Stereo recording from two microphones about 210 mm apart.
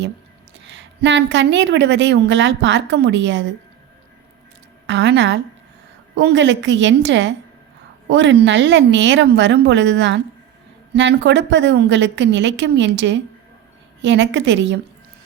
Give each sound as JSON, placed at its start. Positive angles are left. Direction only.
{"t": 0.6, "sound": "a woman's voice", "side_deg": -60}
{"t": 4.9, "sound": "a woman's voice", "side_deg": -55}